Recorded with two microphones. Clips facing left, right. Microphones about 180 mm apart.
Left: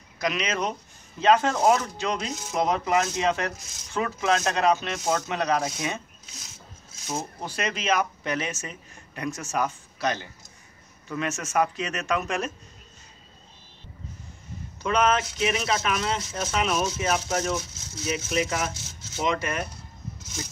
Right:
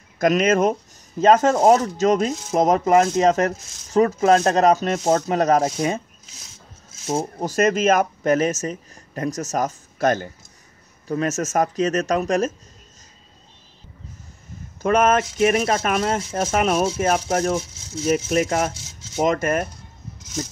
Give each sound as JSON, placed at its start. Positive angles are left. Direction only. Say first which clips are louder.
{"t": 0.2, "sound": "speech", "louder": "right 10 dB", "side_deg": -50}
{"t": 7.2, "sound": "speech", "louder": "right 11 dB", "side_deg": -40}
{"t": 14.8, "sound": "speech", "louder": "right 6 dB", "side_deg": -50}